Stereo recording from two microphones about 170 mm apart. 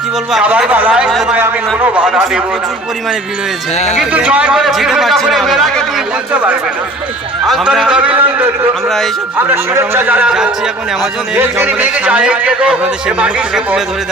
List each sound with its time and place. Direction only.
0.3 s a man's voice: 5° right (ahead or behind)
3.9 s a man's voice: 5° right (ahead or behind)
9.5 s a man's voice: 15° right (ahead or behind)